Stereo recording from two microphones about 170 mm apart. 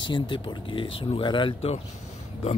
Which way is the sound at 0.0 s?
30° left (ahead or behind).